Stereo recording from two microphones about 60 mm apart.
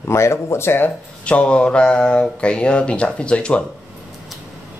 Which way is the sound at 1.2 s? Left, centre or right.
Centre.